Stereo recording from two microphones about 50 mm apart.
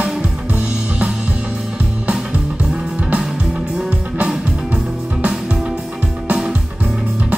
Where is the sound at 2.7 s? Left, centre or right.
Centre.